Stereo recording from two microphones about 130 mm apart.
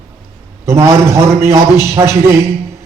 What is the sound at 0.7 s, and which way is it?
Music, 20° right (ahead or behind).